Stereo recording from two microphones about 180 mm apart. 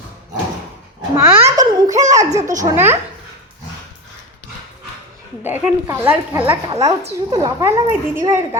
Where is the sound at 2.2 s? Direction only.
40° right (ahead or behind).